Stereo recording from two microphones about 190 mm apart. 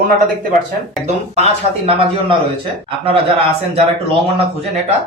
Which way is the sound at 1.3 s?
30° right (ahead or behind).